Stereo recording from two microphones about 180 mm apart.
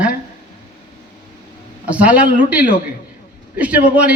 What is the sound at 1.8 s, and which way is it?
A man's voice, 5° right (ahead or behind).